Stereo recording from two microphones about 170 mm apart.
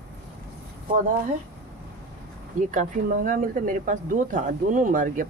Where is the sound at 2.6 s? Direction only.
50° right (ahead or behind).